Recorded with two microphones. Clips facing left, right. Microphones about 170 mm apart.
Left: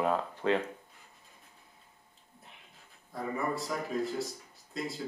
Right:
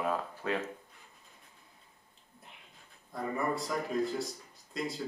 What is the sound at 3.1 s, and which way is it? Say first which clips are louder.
A man's voice: even; centre (ahead or behind).